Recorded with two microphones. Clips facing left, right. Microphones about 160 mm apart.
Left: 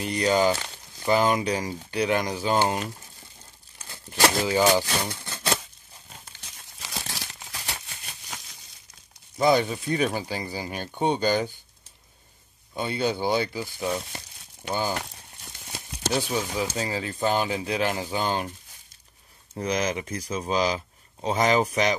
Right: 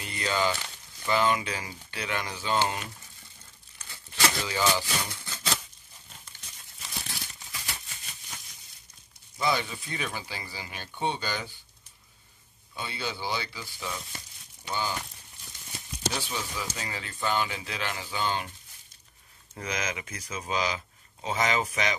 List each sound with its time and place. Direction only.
0.0 s speech: 40° left (ahead or behind)
5.2 s a sound: 65° left (ahead or behind)
6.8 s crumpling: 90° left; by 8.4 s 70° left (ahead or behind)
9.4 s speech: 45° left (ahead or behind)
12.7 s speech: 45° left (ahead or behind)
15.0 s crumpling: 75° left (ahead or behind)
16.1 s speech: 45° left (ahead or behind)
16.5 s speech: 35° left (ahead or behind)
19.5 s speech: 35° left (ahead or behind)